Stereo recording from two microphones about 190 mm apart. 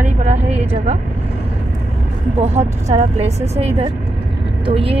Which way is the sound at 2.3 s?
35° right (ahead or behind).